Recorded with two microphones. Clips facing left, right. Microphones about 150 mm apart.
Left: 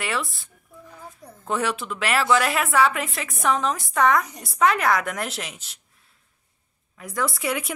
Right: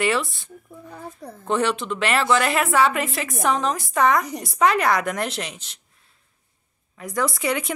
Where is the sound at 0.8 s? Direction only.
65° right (ahead or behind).